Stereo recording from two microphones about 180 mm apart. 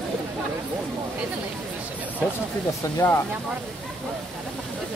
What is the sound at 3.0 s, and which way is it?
Speech, 15° left (ahead or behind).